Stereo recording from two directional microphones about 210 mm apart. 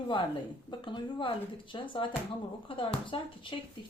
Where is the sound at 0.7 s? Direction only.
25° left (ahead or behind).